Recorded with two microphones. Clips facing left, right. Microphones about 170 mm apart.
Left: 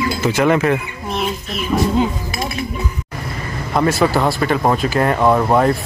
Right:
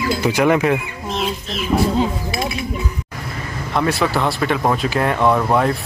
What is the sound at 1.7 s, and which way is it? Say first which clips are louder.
Speech: even; 30° right (ahead or behind).